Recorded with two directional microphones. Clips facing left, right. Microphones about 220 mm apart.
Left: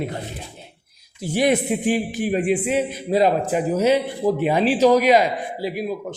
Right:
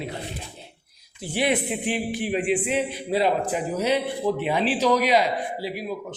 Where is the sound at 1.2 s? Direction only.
45° left (ahead or behind).